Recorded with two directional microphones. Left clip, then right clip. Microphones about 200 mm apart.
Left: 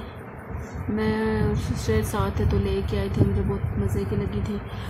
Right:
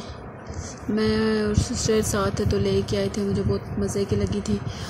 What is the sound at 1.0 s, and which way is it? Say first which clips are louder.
Speech: right 3 dB; 15° right (ahead or behind).